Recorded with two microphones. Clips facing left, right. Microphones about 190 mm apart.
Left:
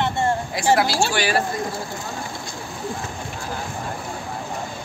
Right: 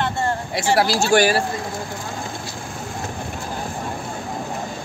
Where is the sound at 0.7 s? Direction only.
45° right (ahead or behind).